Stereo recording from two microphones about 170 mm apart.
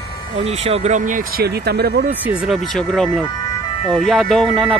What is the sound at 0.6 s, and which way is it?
Speech, 40° right (ahead or behind).